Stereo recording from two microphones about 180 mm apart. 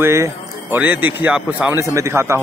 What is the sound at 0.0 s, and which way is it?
A man's voice, 15° right (ahead or behind).